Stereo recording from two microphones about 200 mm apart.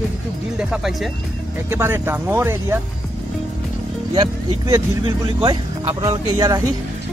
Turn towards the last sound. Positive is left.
turn(degrees=-15)  # may be behind; listen again after turning